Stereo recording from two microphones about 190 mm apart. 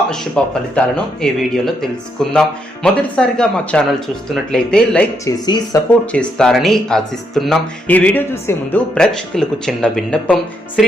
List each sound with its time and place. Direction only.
0.4 s speech: 5° left (ahead or behind)
5.2 s speech: 20° left (ahead or behind)
6.1 s speech: 5° left (ahead or behind)